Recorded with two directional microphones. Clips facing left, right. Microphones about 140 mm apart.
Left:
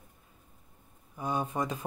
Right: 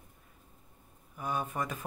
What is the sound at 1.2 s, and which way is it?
Speech, 25° left (ahead or behind).